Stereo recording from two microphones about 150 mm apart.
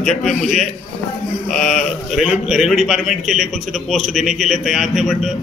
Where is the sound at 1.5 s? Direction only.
55° left (ahead or behind).